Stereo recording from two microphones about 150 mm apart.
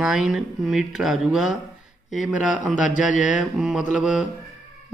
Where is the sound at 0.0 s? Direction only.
5° right (ahead or behind).